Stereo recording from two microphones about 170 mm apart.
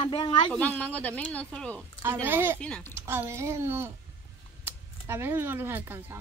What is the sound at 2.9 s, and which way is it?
A woman's voice, 15° right (ahead or behind).